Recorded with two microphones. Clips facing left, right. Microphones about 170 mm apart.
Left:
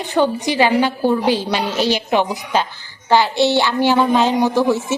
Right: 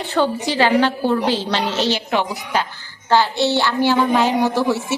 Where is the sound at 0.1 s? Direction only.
15° left (ahead or behind).